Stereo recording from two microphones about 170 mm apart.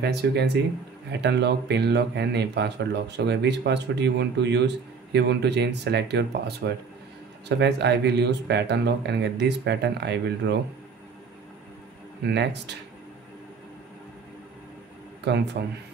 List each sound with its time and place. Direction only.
0.0 s speech: 75° right (ahead or behind); by 10.6 s 90° right
12.2 s speech: 85° right
15.2 s speech: 90° right